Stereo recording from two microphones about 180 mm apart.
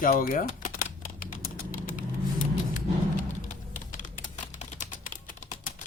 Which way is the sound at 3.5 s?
45° left (ahead or behind).